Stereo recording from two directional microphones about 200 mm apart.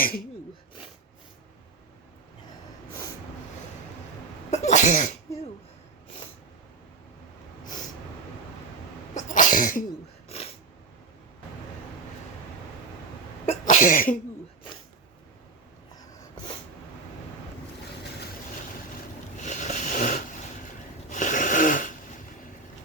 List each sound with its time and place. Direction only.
0.0 s speech: 45° left (ahead or behind)
4.5 s sneeze: 35° left (ahead or behind)
9.1 s sneeze: 40° left (ahead or behind)
10.2 s sneeze: 30° left (ahead or behind)
13.4 s sneeze: 35° left (ahead or behind)
19.4 s a sound: 35° left (ahead or behind)
21.1 s wheeze: 40° left (ahead or behind)